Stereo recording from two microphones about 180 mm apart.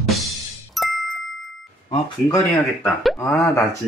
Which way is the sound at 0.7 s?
Centre (ahead or behind).